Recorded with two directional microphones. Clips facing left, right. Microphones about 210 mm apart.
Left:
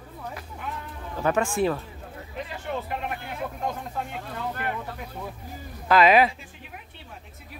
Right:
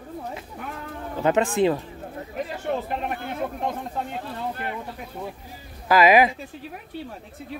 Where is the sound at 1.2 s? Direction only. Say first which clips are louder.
Right 3 dB; 20° right (ahead or behind).